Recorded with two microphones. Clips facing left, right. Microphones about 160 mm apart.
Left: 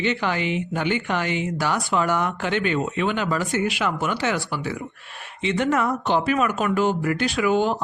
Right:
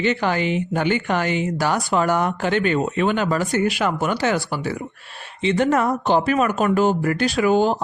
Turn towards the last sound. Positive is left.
turn(degrees=-35)  # may be behind; listen again after turning